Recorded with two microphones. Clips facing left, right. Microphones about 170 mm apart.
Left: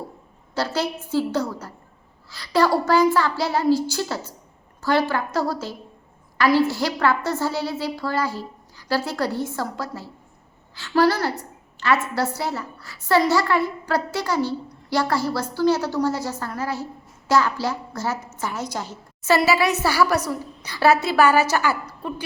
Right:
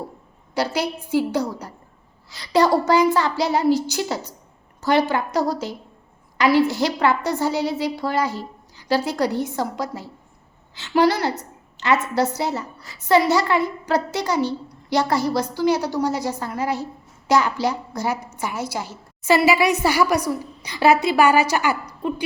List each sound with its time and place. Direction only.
0.5 s a woman's voice: 15° right (ahead or behind)